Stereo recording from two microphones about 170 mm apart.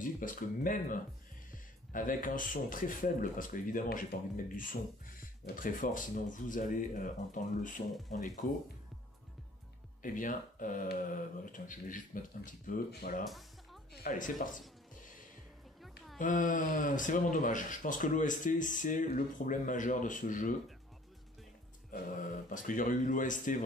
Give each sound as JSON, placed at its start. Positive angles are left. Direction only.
{"t": 0.0, "sound": "speech", "side_deg": 50}
{"t": 5.4, "sound": "speech", "side_deg": 55}
{"t": 10.0, "sound": "speech", "side_deg": 50}
{"t": 16.2, "sound": "speech", "side_deg": 50}
{"t": 22.1, "sound": "speech", "side_deg": 50}